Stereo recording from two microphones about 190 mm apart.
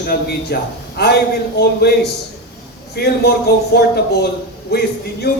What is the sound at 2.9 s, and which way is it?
Speech, 55° left (ahead or behind).